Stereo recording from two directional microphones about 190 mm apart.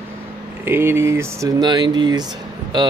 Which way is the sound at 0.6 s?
10° right (ahead or behind).